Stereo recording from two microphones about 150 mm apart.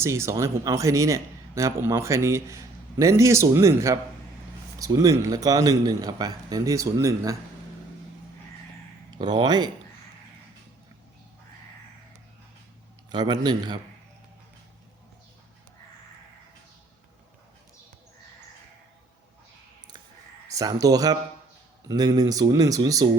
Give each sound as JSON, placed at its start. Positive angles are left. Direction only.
{"t": 0.0, "sound": "speech", "side_deg": -20}
{"t": 9.1, "sound": "speech", "side_deg": -30}
{"t": 13.1, "sound": "speech", "side_deg": -30}
{"t": 20.5, "sound": "speech", "side_deg": -20}